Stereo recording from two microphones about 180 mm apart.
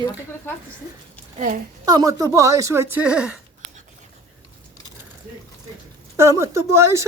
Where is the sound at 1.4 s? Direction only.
45° right (ahead or behind).